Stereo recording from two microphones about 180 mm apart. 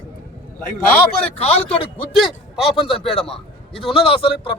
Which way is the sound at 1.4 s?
35° left (ahead or behind).